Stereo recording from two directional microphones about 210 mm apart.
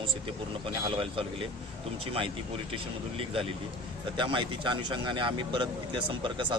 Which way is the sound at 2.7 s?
25° right (ahead or behind).